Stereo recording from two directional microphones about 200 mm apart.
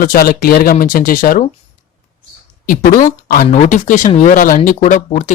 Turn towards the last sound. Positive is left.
turn(degrees=35)  # may be behind; listen again after turning